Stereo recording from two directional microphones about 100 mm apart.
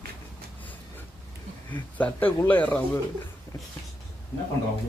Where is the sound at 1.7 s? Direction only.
15° left (ahead or behind).